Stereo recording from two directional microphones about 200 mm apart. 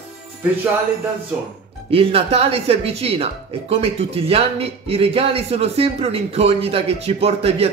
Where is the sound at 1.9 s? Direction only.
30° right (ahead or behind).